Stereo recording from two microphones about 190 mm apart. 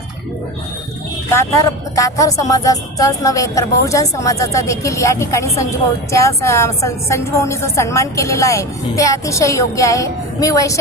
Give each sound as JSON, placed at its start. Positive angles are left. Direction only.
{"t": 1.3, "sound": "a woman's voice", "side_deg": 15}